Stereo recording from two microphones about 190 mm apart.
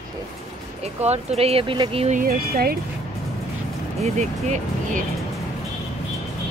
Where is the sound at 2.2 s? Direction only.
50° right (ahead or behind).